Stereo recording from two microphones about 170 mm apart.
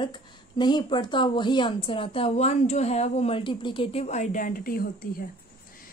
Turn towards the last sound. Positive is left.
turn(degrees=60)  # may be behind; listen again after turning